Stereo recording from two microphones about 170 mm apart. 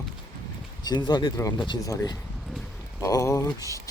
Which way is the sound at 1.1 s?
25° left (ahead or behind).